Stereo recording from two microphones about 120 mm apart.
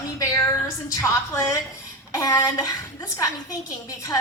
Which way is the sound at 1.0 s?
25° left (ahead or behind).